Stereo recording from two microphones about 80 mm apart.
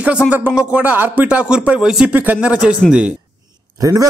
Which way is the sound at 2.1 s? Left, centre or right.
Right.